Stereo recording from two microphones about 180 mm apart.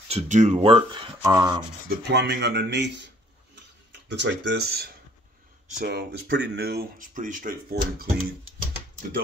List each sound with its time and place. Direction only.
0.1 s speech: 40° right (ahead or behind); by 1.6 s 15° right (ahead or behind)
2.0 s speech: 70° right (ahead or behind)
4.1 s speech: 75° right (ahead or behind); by 8.1 s 55° right (ahead or behind)